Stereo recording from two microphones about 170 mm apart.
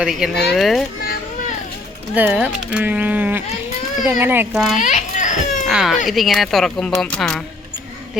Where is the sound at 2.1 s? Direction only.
10° right (ahead or behind).